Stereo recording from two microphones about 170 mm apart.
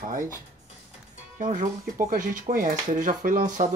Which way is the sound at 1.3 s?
45° right (ahead or behind).